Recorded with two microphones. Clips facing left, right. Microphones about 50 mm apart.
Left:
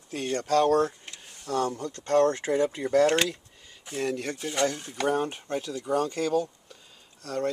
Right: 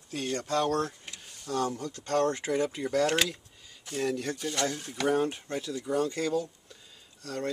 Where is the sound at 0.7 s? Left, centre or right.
Centre.